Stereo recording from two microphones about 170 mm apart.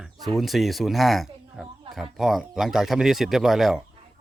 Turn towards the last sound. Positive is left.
turn(degrees=0)  # may be behind; listen again after turning